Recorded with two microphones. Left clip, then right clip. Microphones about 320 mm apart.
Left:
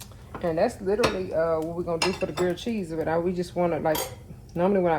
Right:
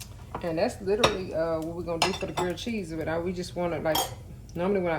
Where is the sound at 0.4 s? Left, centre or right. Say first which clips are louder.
Left 3 dB; centre.